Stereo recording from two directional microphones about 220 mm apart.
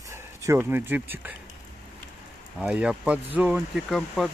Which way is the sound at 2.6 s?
5° right (ahead or behind).